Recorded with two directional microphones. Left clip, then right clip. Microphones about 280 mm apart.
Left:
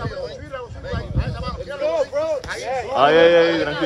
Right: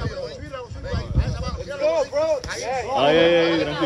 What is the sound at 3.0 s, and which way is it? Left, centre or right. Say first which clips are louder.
Speech: left 4 dB; centre.